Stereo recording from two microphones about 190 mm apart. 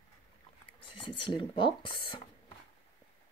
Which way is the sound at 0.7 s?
25° left (ahead or behind).